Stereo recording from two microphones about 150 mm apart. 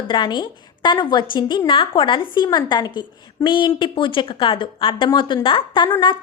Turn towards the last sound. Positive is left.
turn(degrees=35)  # may be behind; listen again after turning